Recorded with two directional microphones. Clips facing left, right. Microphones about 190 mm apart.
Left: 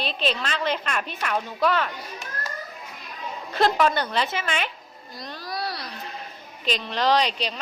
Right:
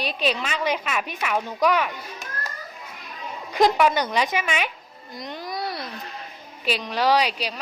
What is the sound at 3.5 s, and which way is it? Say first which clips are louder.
A woman's voice: right 2 dB; 10° right (ahead or behind).